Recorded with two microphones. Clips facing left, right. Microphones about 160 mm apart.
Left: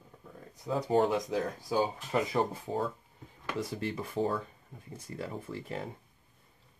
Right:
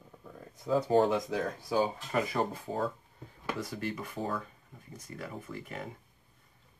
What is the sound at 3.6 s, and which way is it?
Speech, 25° left (ahead or behind).